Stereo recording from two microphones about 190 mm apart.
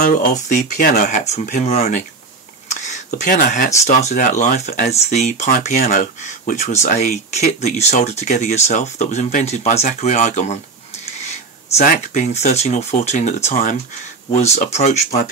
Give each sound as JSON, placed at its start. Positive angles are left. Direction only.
{"t": 0.0, "sound": "speech", "side_deg": 40}
{"t": 11.8, "sound": "speech", "side_deg": 40}